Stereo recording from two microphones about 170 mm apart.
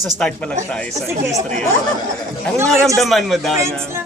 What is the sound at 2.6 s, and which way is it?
Speech, 15° right (ahead or behind).